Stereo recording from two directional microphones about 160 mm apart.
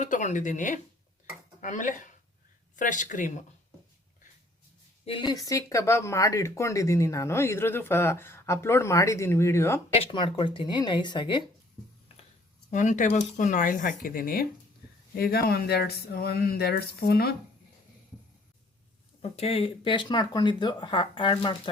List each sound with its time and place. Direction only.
0.0 s speech: 50° left (ahead or behind)
5.0 s speech: 30° left (ahead or behind); by 9.8 s 15° left (ahead or behind)
9.9 s speech: 35° left (ahead or behind)
12.7 s speech: 50° left (ahead or behind); by 17.3 s 80° left
19.2 s speech: 40° left (ahead or behind)